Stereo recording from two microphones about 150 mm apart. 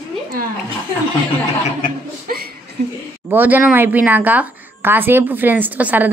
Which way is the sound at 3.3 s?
10° right (ahead or behind).